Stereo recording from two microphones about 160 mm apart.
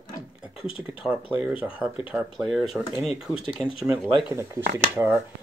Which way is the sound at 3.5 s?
35° left (ahead or behind).